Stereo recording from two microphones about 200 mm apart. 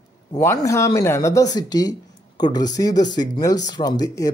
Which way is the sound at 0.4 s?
15° left (ahead or behind).